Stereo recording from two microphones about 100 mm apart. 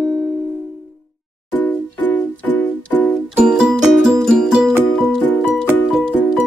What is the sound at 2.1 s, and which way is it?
Music, 15° left (ahead or behind).